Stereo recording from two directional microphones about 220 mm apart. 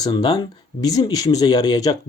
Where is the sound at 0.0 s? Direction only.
20° left (ahead or behind).